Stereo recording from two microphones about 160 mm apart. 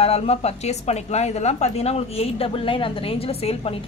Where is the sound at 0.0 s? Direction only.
40° left (ahead or behind).